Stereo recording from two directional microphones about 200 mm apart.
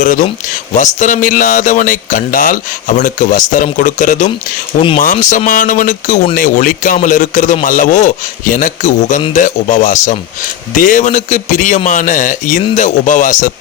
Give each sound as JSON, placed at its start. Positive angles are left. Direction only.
{"t": 0.0, "sound": "a man's voice", "side_deg": 40}